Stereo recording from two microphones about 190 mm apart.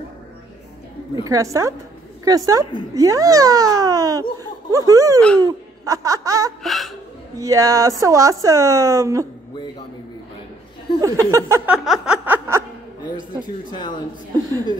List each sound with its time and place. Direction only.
1.2 s a woman's voice: 15° right (ahead or behind)
5.4 s music: 15° right (ahead or behind)
6.6 s music: centre (ahead or behind)
7.3 s speech: 15° right (ahead or behind)
11.0 s speech: 15° right (ahead or behind)
13.7 s speech: 25° left (ahead or behind)